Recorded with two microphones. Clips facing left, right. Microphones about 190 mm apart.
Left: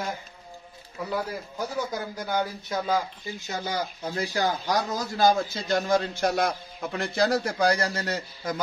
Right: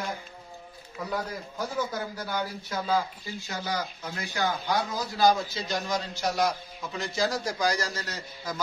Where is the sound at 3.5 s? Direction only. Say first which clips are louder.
Left 2 dB; 30° left (ahead or behind).